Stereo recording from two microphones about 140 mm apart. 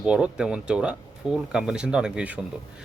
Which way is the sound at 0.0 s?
5° right (ahead or behind).